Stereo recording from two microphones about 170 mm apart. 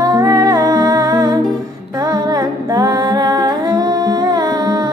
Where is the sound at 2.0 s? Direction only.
20° right (ahead or behind).